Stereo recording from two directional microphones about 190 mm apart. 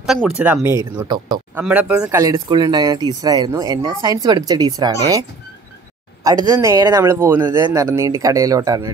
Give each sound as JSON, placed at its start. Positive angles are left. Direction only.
{"t": 0.0, "sound": "speech", "side_deg": 0}
{"t": 1.5, "sound": "speech", "side_deg": -5}
{"t": 6.2, "sound": "speech", "side_deg": -20}